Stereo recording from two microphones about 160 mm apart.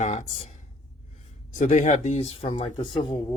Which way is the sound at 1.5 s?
50° left (ahead or behind).